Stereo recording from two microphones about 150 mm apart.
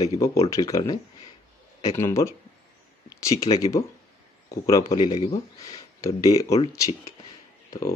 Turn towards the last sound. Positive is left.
turn(degrees=20)  # may be behind; listen again after turning